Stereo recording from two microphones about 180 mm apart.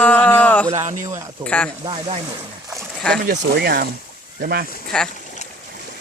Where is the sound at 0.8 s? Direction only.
45° right (ahead or behind).